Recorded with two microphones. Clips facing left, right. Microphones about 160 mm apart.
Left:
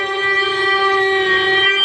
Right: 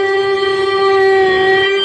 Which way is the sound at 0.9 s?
30° right (ahead or behind).